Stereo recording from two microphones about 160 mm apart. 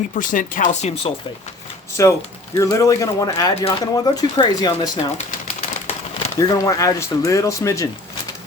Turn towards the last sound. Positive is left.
turn(degrees=20)  # may be behind; listen again after turning